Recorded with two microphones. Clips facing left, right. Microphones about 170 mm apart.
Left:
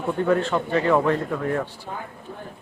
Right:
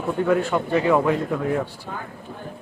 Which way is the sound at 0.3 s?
10° right (ahead or behind).